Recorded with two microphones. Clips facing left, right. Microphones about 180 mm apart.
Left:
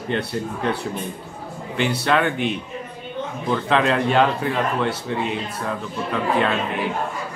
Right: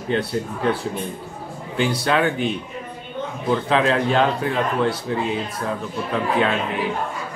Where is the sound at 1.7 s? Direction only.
Centre (ahead or behind).